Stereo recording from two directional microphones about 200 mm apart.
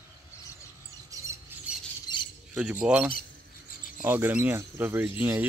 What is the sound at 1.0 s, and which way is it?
Bird, 15° right (ahead or behind).